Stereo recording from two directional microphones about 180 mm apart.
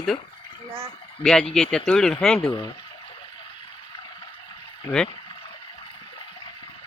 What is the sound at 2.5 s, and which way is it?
Speech, 25° left (ahead or behind).